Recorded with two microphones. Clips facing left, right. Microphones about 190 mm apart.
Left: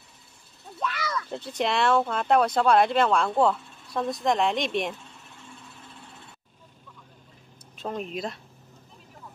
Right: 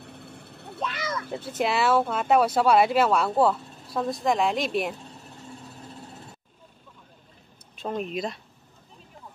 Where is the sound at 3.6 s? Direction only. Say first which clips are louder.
Right 5 dB; 40° right (ahead or behind).